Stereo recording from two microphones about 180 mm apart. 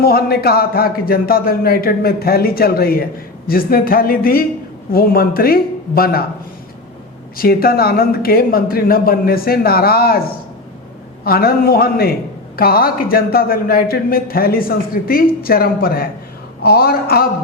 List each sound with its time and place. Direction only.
0.0 s a man's voice: 55° left (ahead or behind)
7.3 s a man's voice: 55° left (ahead or behind)